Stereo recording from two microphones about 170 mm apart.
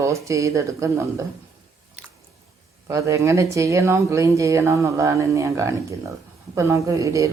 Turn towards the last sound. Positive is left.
turn(degrees=-20)  # may be behind; listen again after turning